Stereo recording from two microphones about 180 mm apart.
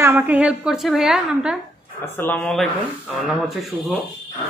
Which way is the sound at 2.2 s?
5° left (ahead or behind).